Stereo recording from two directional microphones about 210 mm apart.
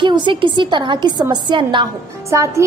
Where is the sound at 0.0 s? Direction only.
20° right (ahead or behind).